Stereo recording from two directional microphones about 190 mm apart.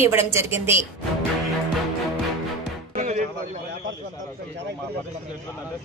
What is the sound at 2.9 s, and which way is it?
Music, 35° right (ahead or behind).